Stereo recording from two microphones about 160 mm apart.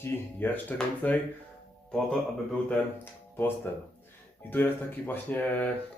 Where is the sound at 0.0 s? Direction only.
10° left (ahead or behind).